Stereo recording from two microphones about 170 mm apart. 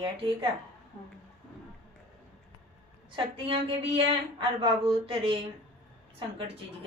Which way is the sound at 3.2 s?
35° right (ahead or behind).